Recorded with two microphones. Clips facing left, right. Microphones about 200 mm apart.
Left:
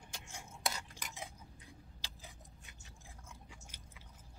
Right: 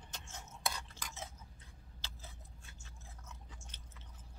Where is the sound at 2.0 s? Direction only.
15° left (ahead or behind).